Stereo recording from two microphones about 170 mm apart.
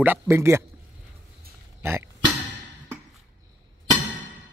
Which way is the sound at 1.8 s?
15° right (ahead or behind).